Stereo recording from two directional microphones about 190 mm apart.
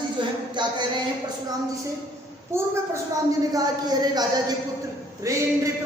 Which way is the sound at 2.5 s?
15° right (ahead or behind).